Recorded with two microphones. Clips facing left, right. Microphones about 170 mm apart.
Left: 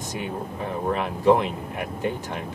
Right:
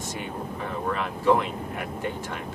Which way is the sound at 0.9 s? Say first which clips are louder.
Left 3 dB; 20° left (ahead or behind).